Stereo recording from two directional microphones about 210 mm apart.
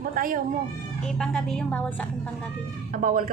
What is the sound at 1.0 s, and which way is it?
Speech, 5° left (ahead or behind).